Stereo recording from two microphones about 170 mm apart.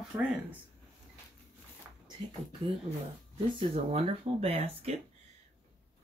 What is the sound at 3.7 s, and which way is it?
Speech, 35° right (ahead or behind).